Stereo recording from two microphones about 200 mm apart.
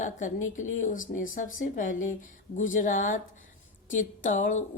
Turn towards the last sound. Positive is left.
turn(degrees=40)  # may be behind; listen again after turning